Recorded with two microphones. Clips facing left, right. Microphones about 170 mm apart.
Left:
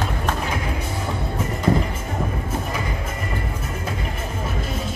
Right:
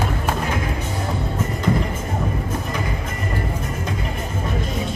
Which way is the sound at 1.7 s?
35° left (ahead or behind).